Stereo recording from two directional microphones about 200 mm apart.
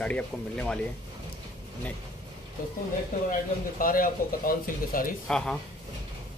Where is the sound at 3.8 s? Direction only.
45° left (ahead or behind).